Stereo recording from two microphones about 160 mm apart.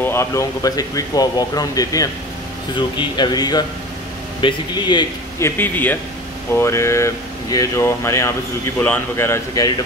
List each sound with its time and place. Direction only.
0.0 s speech: 15° left (ahead or behind)
5.4 s speech: 10° left (ahead or behind)